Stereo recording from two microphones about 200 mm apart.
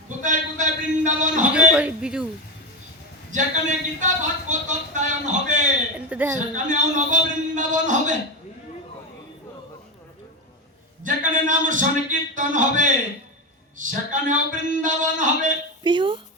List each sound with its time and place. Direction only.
0.2 s a sound: 40° right (ahead or behind)
1.5 s a man's voice: 5° right (ahead or behind)
3.3 s a man's voice: 40° right (ahead or behind)
6.1 s a woman's voice: 5° right (ahead or behind)
6.3 s a man's voice: 40° right (ahead or behind)
11.0 s a man's voice: 40° right (ahead or behind)
15.8 s speech: 25° right (ahead or behind)